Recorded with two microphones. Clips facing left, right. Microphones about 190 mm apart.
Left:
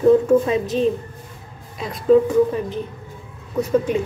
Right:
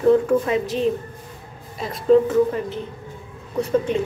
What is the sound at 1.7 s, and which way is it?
Speech, centre (ahead or behind).